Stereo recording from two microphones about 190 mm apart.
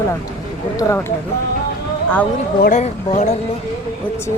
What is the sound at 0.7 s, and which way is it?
Speech, 20° left (ahead or behind).